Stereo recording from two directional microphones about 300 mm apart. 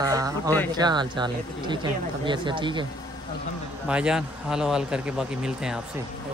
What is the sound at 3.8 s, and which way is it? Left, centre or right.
Speech, centre.